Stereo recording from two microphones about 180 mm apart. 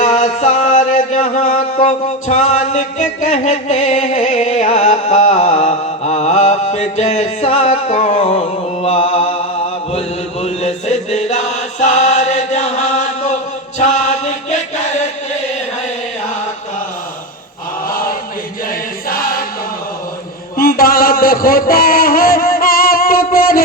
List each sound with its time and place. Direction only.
0.0 s music: 40° left (ahead or behind)
10.4 s chant: 40° left (ahead or behind)
17.8 s chant: 50° left (ahead or behind)
19.0 s choir: 50° left (ahead or behind)
20.6 s a sound: 55° left (ahead or behind)